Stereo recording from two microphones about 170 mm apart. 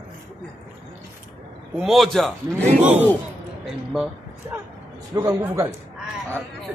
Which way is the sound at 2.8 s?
10° right (ahead or behind).